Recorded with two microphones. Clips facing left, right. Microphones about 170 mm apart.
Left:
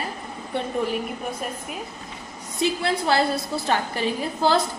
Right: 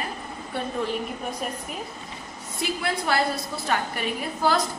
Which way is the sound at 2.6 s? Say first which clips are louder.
Left 5 dB; 25° left (ahead or behind).